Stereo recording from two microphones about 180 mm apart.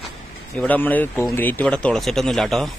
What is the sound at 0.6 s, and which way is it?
Speech, 10° left (ahead or behind).